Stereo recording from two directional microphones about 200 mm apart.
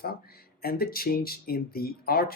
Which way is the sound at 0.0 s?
50° left (ahead or behind).